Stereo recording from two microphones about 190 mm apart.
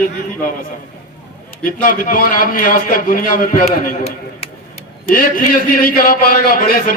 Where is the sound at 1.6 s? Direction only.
45° left (ahead or behind).